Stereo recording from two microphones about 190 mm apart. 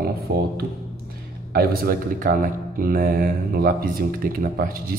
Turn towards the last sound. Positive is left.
turn(degrees=-50)  # may be behind; listen again after turning